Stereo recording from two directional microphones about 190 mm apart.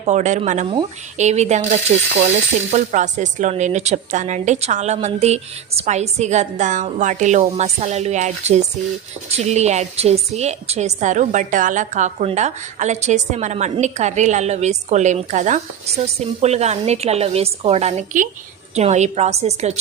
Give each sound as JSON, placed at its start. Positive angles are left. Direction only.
{"t": 0.0, "sound": "speech", "side_deg": -40}